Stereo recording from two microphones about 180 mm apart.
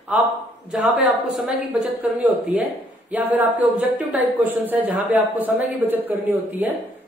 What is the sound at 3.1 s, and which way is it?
Speech, 10° right (ahead or behind).